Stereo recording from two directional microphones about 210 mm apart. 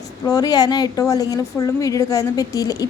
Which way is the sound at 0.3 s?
15° left (ahead or behind).